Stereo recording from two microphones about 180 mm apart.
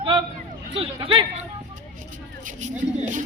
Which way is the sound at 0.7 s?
30° right (ahead or behind).